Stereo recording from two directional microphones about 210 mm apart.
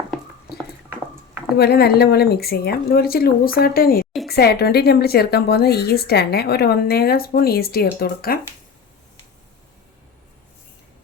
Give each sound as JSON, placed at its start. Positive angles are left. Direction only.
{"t": 1.5, "sound": "a woman's voice", "side_deg": 50}